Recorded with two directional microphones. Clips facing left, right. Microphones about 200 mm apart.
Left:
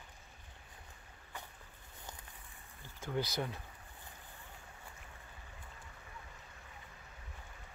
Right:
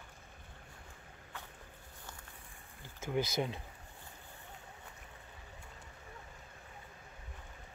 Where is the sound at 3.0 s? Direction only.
15° right (ahead or behind).